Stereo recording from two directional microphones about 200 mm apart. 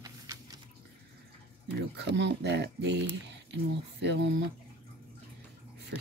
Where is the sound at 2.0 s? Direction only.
60° right (ahead or behind).